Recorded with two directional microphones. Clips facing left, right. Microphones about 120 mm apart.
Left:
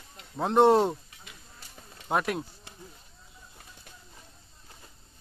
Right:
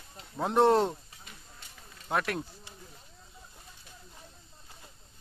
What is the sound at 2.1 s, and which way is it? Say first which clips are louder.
Speech: left 3 dB; 15° left (ahead or behind).